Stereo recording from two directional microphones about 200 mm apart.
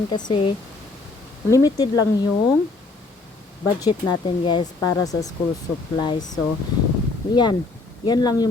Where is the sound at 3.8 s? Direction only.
20° left (ahead or behind).